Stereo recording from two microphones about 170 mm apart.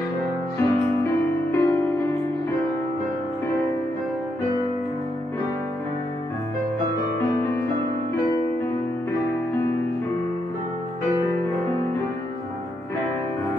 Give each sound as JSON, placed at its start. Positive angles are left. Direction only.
{"t": 0.6, "sound": "music", "side_deg": 15}
{"t": 7.2, "sound": "music", "side_deg": 15}